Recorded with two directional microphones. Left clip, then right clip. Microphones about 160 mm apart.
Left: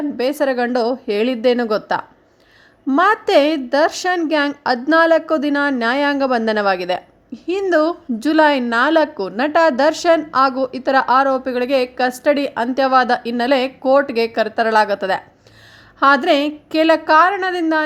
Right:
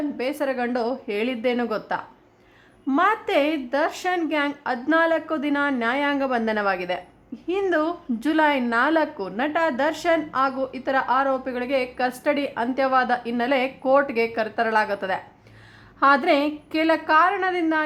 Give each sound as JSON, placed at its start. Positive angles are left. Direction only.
{"t": 0.2, "sound": "a woman's voice", "side_deg": 30}